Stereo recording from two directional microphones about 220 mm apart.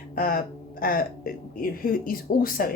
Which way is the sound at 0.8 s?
40° left (ahead or behind).